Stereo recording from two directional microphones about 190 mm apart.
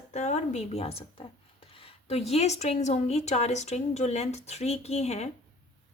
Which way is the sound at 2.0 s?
35° left (ahead or behind).